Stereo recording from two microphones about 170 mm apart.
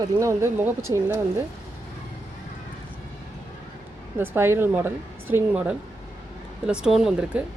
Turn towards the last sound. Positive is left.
turn(degrees=-5)  # may be behind; listen again after turning